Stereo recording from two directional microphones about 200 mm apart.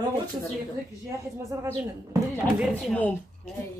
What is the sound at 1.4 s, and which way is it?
Speech, 15° right (ahead or behind).